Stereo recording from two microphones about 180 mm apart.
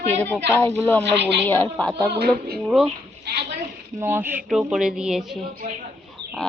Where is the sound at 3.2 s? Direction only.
65° right (ahead or behind).